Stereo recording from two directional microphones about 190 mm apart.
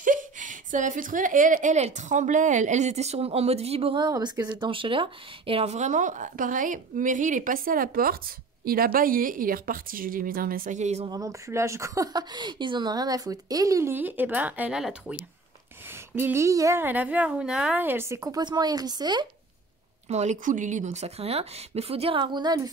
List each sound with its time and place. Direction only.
0.0 s a woman's voice: 45° right (ahead or behind)
11.1 s speech: 20° right (ahead or behind)
20.1 s a woman's voice: 35° right (ahead or behind)